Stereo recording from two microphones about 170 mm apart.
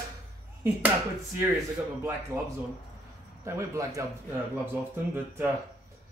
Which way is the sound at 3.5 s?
15° right (ahead or behind).